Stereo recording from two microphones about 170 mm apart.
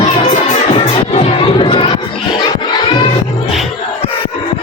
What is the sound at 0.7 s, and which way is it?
Music, 35° left (ahead or behind).